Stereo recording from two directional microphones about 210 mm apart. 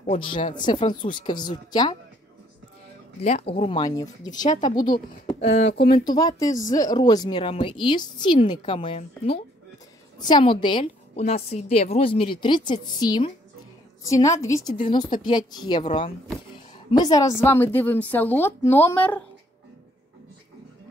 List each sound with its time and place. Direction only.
0.0 s speech: 25° left (ahead or behind)
3.2 s speech: 30° left (ahead or behind)
5.6 s speech: 60° left (ahead or behind)
6.0 s a woman's voice: 15° left (ahead or behind)